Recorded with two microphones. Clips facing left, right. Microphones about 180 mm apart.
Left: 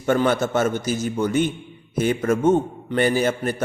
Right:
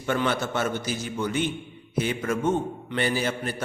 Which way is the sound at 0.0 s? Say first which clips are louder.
Left 6 dB; 45° left (ahead or behind).